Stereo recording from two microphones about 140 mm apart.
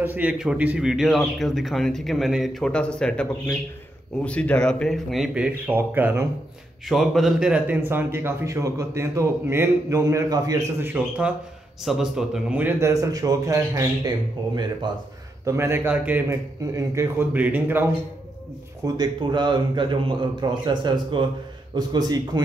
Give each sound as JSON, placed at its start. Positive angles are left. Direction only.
{"t": 0.0, "sound": "a man's voice", "side_deg": -10}
{"t": 6.9, "sound": "speech", "side_deg": 0}
{"t": 10.8, "sound": "a man's voice", "side_deg": -15}
{"t": 15.4, "sound": "speech", "side_deg": -20}
{"t": 18.9, "sound": "a man's voice", "side_deg": -35}